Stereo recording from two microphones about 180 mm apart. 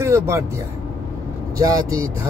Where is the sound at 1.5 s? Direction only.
20° right (ahead or behind).